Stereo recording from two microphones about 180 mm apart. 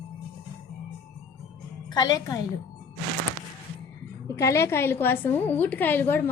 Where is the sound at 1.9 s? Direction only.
20° left (ahead or behind).